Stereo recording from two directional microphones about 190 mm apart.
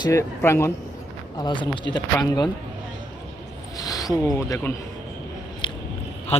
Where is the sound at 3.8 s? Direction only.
20° left (ahead or behind).